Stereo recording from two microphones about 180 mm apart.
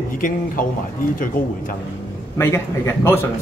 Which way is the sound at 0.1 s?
50° left (ahead or behind).